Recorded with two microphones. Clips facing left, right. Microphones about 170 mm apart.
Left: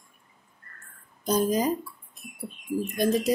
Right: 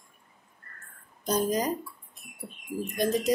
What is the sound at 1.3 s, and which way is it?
Speech, 10° left (ahead or behind).